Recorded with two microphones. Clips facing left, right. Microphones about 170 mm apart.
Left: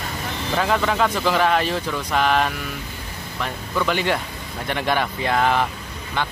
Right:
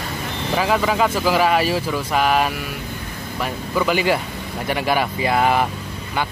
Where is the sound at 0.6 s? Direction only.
5° right (ahead or behind).